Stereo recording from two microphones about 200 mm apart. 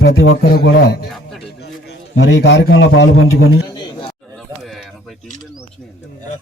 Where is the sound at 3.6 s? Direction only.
20° left (ahead or behind).